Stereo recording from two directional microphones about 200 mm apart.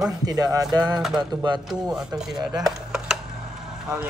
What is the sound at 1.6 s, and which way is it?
Speech, centre (ahead or behind).